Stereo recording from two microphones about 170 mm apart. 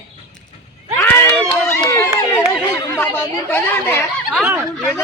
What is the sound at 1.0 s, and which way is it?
Speech, 10° left (ahead or behind).